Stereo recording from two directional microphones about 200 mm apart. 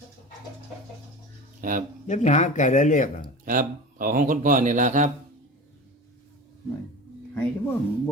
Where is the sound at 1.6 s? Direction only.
45° right (ahead or behind).